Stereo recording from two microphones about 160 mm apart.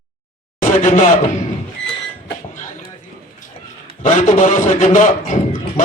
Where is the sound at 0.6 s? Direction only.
55° left (ahead or behind).